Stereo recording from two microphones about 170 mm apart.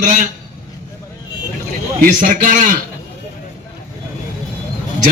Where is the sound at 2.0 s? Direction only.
50° right (ahead or behind).